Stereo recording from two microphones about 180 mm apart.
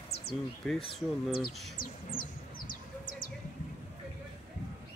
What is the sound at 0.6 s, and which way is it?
Speech, centre (ahead or behind).